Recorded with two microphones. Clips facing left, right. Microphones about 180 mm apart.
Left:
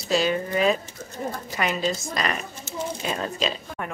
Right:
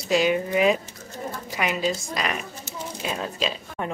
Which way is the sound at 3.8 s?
20° right (ahead or behind).